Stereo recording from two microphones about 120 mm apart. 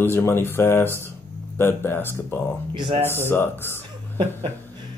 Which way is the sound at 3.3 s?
20° left (ahead or behind).